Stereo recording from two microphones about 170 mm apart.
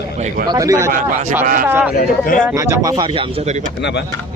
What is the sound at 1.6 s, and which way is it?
Speech, 10° right (ahead or behind).